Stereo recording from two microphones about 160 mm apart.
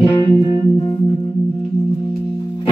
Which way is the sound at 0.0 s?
30° left (ahead or behind).